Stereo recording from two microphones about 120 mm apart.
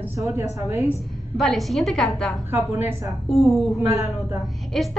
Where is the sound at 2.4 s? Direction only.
20° right (ahead or behind).